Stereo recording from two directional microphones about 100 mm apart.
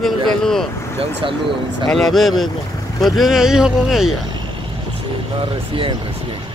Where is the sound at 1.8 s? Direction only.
5° left (ahead or behind).